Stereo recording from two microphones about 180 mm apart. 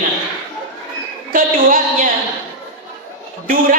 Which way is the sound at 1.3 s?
50° right (ahead or behind).